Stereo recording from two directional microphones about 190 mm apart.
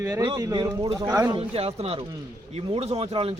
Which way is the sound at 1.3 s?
30° right (ahead or behind).